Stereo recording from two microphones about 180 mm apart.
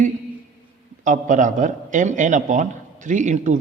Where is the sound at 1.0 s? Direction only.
45° right (ahead or behind).